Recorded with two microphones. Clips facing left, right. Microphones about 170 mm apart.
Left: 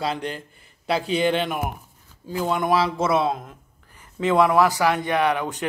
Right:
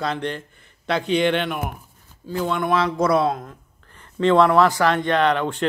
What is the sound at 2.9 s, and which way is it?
Speech, 25° left (ahead or behind).